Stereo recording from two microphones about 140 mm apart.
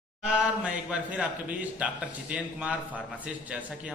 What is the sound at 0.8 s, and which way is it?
A man's voice, 10° right (ahead or behind).